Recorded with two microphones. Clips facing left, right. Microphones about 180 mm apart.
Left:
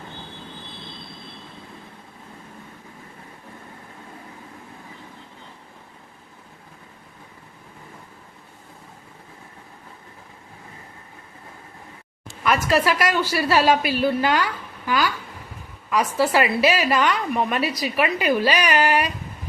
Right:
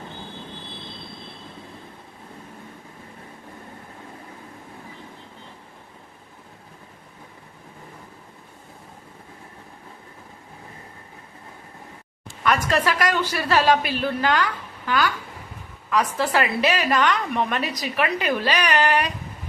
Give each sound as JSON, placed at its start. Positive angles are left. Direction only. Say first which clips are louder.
{"t": 12.5, "sound": "a woman's voice", "louder": "left 2 dB", "side_deg": 10}